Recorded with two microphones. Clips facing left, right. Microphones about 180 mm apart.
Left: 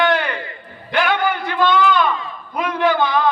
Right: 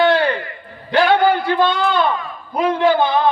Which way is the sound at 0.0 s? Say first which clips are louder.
Right 4 dB; 30° right (ahead or behind).